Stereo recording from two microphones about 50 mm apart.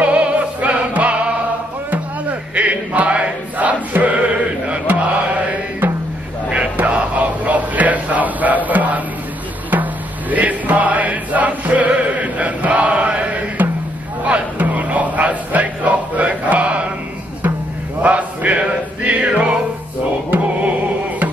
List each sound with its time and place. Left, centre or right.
0.0 s music: right
6.5 s music: right
10.3 s chant: right
14.2 s music: right
18.0 s music: right